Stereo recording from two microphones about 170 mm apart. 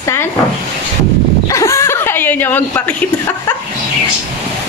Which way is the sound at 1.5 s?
15° left (ahead or behind).